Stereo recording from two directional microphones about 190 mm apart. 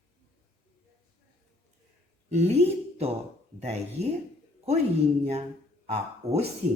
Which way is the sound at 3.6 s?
35° right (ahead or behind).